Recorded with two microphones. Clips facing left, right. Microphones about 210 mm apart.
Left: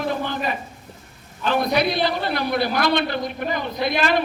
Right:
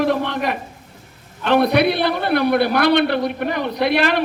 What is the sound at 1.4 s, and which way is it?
A man's voice, 65° right (ahead or behind).